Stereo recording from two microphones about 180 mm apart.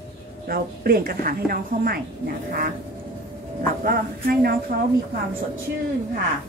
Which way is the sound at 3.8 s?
55° right (ahead or behind).